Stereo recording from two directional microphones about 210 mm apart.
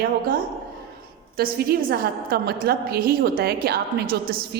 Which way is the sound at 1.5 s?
45° right (ahead or behind).